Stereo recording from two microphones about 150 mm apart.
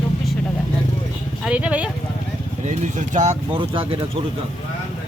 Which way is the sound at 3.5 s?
35° right (ahead or behind).